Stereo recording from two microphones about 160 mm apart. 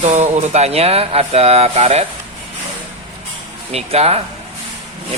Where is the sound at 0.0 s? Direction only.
45° right (ahead or behind).